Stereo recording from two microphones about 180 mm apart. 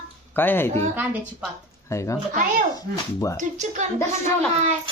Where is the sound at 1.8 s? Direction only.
15° left (ahead or behind).